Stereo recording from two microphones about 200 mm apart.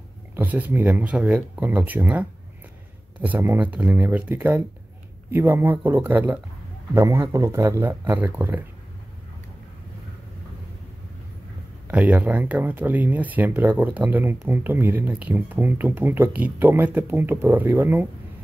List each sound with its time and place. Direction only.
0.4 s speech: 10° right (ahead or behind)
11.9 s speech: 5° right (ahead or behind)